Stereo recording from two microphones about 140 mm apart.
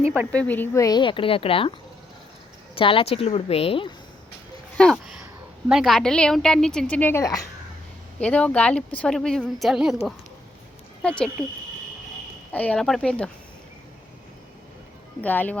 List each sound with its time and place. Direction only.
0.3 s a woman's voice: 10° left (ahead or behind); by 1.7 s 40° left (ahead or behind)
2.7 s a woman's voice: 40° left (ahead or behind)
4.8 s a woman's voice: 5° left (ahead or behind); by 7.4 s 25° left (ahead or behind)
8.2 s a woman's voice: 10° left (ahead or behind)
12.5 s a woman's voice: 10° left (ahead or behind)
15.2 s speech: 10° left (ahead or behind)